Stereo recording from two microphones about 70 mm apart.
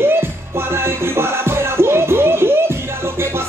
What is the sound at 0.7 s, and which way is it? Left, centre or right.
Music, right.